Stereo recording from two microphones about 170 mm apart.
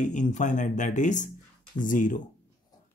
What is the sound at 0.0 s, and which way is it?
Speech, 45° left (ahead or behind).